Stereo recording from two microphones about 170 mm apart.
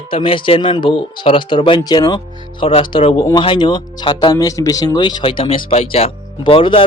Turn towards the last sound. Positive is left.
turn(degrees=30)  # may be behind; listen again after turning